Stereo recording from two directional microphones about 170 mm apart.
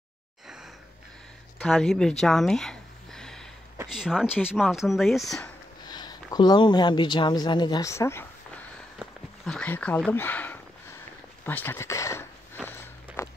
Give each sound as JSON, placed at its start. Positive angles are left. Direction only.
{"t": 1.6, "sound": "speech", "side_deg": 5}
{"t": 5.9, "sound": "speech", "side_deg": 25}
{"t": 9.0, "sound": "a sound", "side_deg": 0}
{"t": 11.4, "sound": "speech", "side_deg": 10}
{"t": 12.6, "sound": "walk", "side_deg": 15}